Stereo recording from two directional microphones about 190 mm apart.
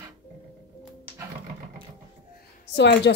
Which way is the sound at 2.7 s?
65° left (ahead or behind).